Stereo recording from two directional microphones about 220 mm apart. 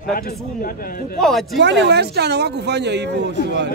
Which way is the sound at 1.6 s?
50° right (ahead or behind).